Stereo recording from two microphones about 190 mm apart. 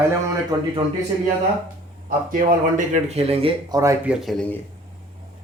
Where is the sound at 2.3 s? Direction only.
45° right (ahead or behind); by 3.9 s 20° right (ahead or behind).